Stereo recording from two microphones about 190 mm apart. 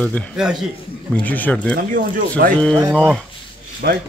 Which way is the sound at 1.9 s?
45° right (ahead or behind).